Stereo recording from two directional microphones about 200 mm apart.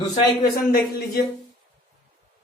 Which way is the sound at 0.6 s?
45° left (ahead or behind).